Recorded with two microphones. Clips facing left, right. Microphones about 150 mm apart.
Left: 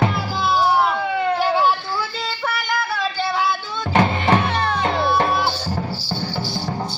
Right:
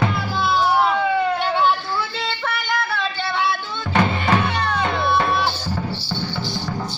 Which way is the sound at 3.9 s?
35° left (ahead or behind).